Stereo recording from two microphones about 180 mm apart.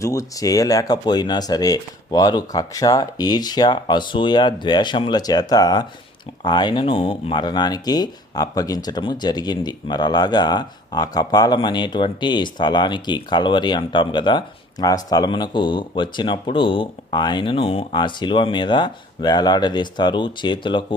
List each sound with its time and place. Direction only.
0.0 s speech: 15° left (ahead or behind)